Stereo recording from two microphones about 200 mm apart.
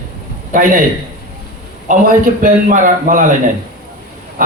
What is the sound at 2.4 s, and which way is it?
Speech, 40° right (ahead or behind).